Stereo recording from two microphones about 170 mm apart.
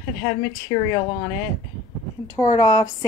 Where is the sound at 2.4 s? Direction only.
20° left (ahead or behind).